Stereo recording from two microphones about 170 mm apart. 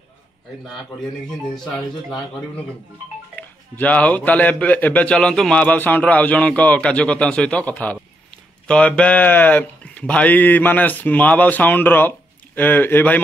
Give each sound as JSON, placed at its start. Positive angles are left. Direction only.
{"t": 3.3, "sound": "speech", "side_deg": 10}